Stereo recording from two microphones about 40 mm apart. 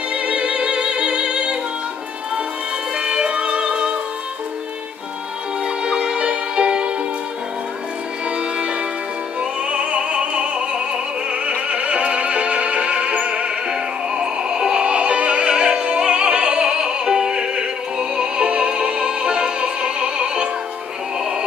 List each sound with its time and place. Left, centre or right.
0.1 s music: right
3.0 s music: right
6.0 s music: right
9.4 s music: right